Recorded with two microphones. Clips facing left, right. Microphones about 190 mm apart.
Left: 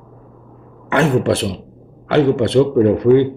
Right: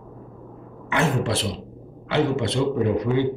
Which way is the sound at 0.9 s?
65° left (ahead or behind).